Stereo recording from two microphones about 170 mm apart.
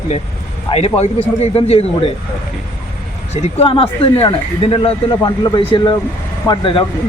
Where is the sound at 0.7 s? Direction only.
35° left (ahead or behind).